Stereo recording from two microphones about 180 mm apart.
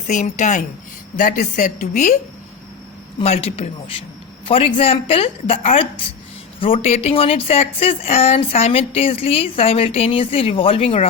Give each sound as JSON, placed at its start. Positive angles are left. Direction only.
{"t": 0.1, "sound": "a woman's voice", "side_deg": 40}
{"t": 3.2, "sound": "speech", "side_deg": 35}